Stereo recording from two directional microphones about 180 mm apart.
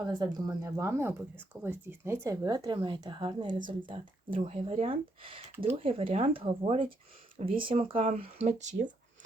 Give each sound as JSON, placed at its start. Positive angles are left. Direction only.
{"t": 0.2, "sound": "speech", "side_deg": -20}